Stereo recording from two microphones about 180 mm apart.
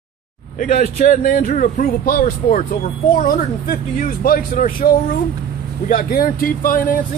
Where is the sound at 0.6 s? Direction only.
50° left (ahead or behind).